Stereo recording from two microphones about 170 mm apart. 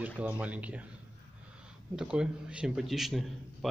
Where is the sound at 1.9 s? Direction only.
5° right (ahead or behind).